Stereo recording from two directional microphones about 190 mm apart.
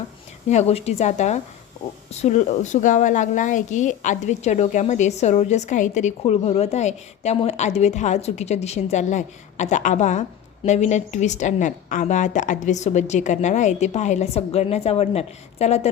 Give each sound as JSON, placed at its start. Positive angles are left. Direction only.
{"t": 0.4, "sound": "a woman's voice", "side_deg": 35}